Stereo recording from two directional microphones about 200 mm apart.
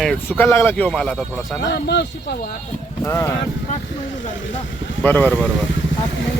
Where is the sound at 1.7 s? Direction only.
55° left (ahead or behind).